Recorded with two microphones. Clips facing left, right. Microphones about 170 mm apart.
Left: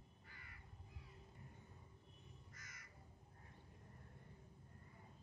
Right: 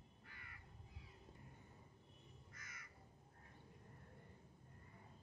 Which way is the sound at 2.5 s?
55° right (ahead or behind).